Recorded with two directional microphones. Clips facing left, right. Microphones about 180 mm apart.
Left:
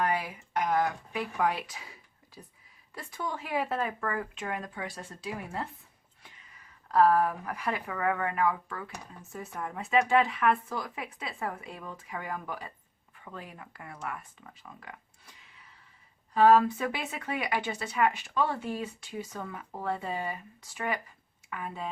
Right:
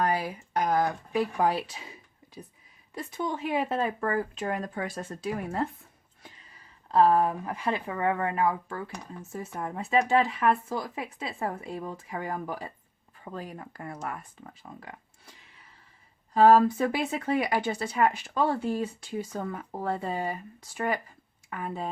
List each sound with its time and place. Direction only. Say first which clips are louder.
0.0 s speech: right 3 dB; 35° right (ahead or behind)
6.2 s speech: right 4 dB; 35° right (ahead or behind)
16.3 s speech: right 2 dB; 35° right (ahead or behind)